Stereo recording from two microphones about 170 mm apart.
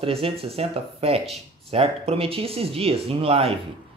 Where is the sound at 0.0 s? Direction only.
35° right (ahead or behind).